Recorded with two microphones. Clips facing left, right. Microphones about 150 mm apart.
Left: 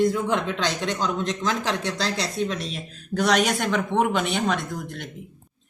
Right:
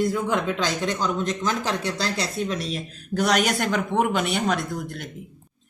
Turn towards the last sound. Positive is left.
turn(degrees=0)  # may be behind; listen again after turning